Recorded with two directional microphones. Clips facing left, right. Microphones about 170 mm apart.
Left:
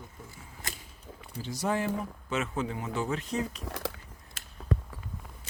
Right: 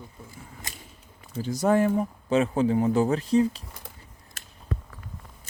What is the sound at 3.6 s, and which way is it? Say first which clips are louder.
Speech: left 10 dB; 90° left.